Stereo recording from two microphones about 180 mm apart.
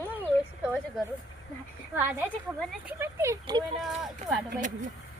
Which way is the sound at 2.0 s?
10° right (ahead or behind).